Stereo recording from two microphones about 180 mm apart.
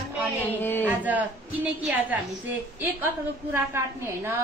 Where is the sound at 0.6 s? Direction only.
10° left (ahead or behind).